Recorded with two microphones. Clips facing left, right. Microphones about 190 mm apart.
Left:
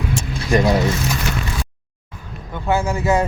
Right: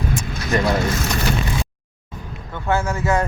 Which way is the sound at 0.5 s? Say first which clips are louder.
Left 3 dB; 15° left (ahead or behind).